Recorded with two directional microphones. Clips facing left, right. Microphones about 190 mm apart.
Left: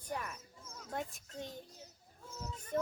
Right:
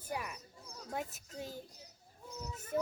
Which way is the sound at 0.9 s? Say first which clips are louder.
Even; 5° right (ahead or behind).